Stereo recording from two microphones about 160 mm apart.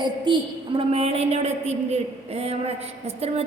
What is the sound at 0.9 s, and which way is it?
A woman's voice, 40° right (ahead or behind).